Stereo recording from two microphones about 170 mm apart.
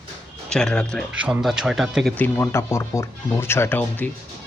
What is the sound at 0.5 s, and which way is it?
Speech, 5° left (ahead or behind).